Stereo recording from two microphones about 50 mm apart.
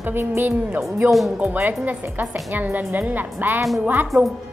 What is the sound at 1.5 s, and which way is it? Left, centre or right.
Speech, right.